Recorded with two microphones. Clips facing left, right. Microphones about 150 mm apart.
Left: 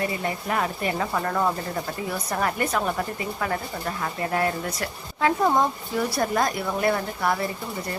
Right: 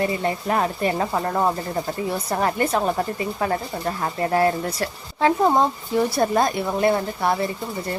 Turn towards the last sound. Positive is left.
turn(degrees=-25)  # may be behind; listen again after turning